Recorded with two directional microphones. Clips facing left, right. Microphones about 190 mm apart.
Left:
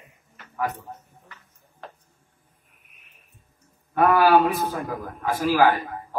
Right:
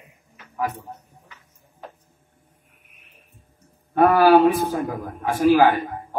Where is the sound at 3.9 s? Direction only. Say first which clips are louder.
Right 3 dB; 30° right (ahead or behind).